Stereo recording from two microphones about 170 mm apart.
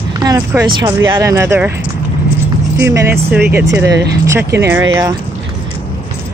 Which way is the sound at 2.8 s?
15° right (ahead or behind).